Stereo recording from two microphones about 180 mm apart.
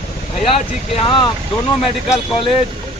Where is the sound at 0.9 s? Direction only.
25° left (ahead or behind).